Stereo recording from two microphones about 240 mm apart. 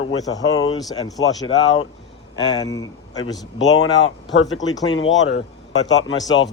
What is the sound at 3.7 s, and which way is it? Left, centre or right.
A man's voice, left.